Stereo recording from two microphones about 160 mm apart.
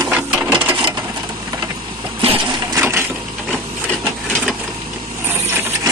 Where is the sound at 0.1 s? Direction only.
5° right (ahead or behind).